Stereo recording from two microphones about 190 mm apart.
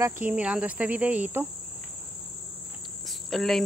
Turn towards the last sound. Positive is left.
turn(degrees=0)  # may be behind; listen again after turning